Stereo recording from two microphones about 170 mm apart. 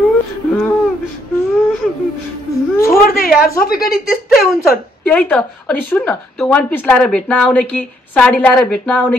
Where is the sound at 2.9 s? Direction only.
60° left (ahead or behind).